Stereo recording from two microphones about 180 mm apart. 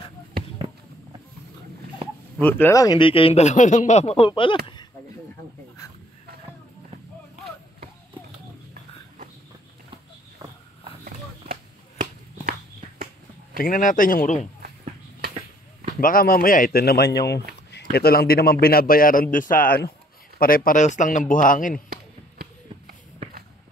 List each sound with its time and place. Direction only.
2.4 s speech: 10° left (ahead or behind); by 4.6 s 25° left (ahead or behind)
13.6 s a man's voice: 50° left (ahead or behind)
16.0 s a man's voice: 55° left (ahead or behind)
21.8 s a sound: 55° right (ahead or behind)